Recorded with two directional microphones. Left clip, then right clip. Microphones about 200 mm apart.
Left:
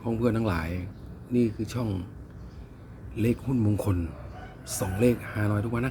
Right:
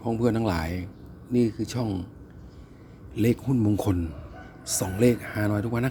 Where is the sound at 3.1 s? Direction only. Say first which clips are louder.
Right 3 dB; 30° right (ahead or behind).